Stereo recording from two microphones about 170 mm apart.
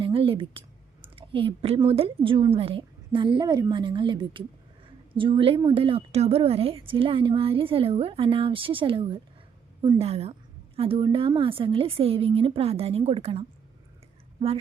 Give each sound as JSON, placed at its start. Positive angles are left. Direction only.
{"t": 0.0, "sound": "a woman's voice", "side_deg": -30}
{"t": 1.0, "sound": "a sound", "side_deg": -30}
{"t": 1.9, "sound": "a woman's voice", "side_deg": -35}